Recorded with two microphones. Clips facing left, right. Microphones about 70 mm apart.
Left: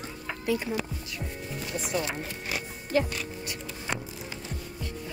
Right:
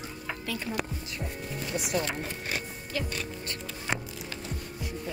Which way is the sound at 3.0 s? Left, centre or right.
Centre.